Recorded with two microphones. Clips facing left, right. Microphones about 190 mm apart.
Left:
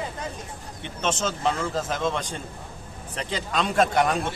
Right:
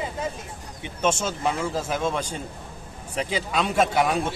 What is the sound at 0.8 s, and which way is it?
A man's voice, 10° right (ahead or behind).